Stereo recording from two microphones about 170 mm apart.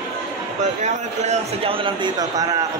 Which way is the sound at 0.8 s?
40° right (ahead or behind).